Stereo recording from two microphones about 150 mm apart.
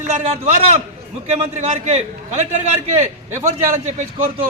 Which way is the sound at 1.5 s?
50° right (ahead or behind).